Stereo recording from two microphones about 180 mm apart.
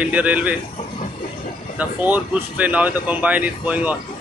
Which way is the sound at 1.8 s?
10° right (ahead or behind).